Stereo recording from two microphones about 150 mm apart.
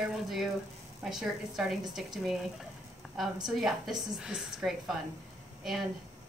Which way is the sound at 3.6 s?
Centre (ahead or behind).